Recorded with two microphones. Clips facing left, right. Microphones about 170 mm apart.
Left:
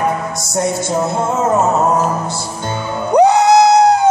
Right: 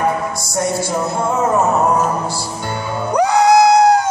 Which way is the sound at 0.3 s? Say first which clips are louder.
Left 1 dB; 20° left (ahead or behind).